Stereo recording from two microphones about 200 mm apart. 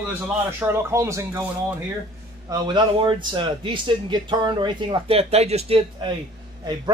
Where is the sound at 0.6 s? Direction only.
15° right (ahead or behind).